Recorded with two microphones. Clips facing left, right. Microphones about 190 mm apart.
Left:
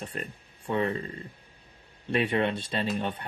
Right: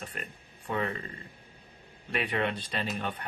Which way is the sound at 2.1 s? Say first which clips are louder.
Left 5 dB; 25° left (ahead or behind).